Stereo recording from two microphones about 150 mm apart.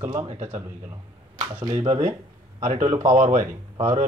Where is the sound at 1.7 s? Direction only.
45° right (ahead or behind).